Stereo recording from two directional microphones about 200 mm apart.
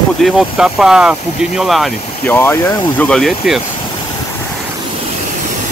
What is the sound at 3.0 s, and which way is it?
Speech, 5° left (ahead or behind).